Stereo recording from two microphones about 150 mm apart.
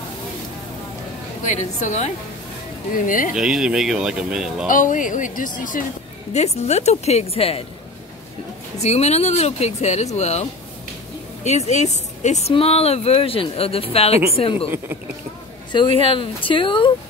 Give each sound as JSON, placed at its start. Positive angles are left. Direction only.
{"t": 1.4, "sound": "a woman's voice", "side_deg": 50}
{"t": 2.9, "sound": "speech", "side_deg": 65}
{"t": 3.3, "sound": "speech", "side_deg": -5}
{"t": 4.6, "sound": "speech", "side_deg": 60}
{"t": 6.3, "sound": "a woman's voice", "side_deg": 45}
{"t": 8.7, "sound": "a woman's voice", "side_deg": 45}
{"t": 15.7, "sound": "speech", "side_deg": 35}